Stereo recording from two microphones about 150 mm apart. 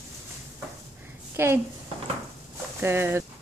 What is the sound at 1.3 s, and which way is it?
Speech, 15° right (ahead or behind).